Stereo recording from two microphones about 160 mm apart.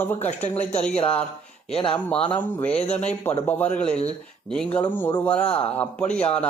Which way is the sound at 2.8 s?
45° left (ahead or behind).